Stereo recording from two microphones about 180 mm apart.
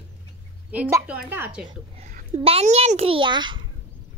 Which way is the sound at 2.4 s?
35° right (ahead or behind).